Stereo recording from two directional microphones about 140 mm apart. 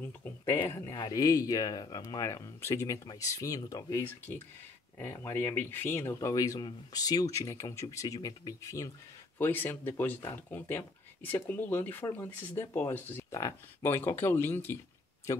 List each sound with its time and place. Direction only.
0.0 s speech: 15° left (ahead or behind)